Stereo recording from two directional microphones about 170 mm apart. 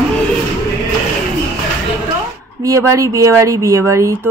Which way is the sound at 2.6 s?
20° right (ahead or behind).